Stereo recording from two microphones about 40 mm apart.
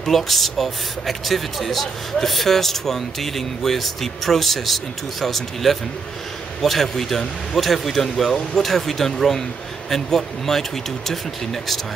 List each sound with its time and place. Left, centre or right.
0.1 s speech: centre